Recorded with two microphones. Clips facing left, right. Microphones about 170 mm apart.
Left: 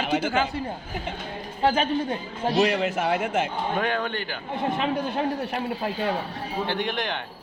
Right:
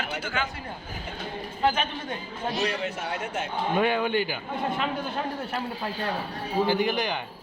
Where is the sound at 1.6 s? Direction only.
30° left (ahead or behind).